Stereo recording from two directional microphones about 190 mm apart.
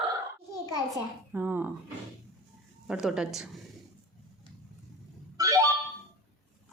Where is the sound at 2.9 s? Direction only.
5° right (ahead or behind).